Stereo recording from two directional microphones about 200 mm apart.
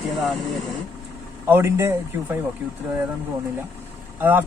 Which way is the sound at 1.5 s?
15° right (ahead or behind).